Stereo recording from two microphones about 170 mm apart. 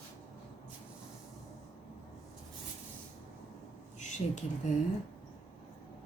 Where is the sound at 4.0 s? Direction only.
45° left (ahead or behind).